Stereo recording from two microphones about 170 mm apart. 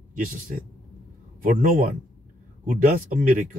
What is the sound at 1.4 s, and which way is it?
Speech, 50° right (ahead or behind).